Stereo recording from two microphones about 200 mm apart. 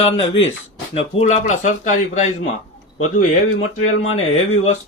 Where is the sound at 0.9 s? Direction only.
35° left (ahead or behind).